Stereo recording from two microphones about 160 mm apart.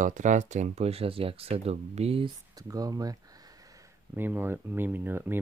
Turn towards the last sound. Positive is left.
turn(degrees=-15)  # may be behind; listen again after turning